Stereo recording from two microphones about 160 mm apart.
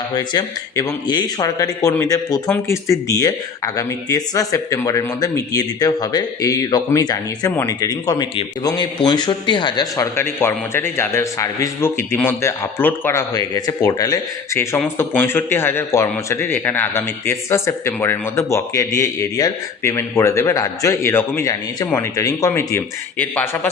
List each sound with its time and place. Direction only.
0.1 s a man's voice: 25° left (ahead or behind)
10.2 s a man's voice: 15° left (ahead or behind)